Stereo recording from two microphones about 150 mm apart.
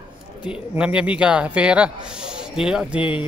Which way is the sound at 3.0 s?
35° left (ahead or behind).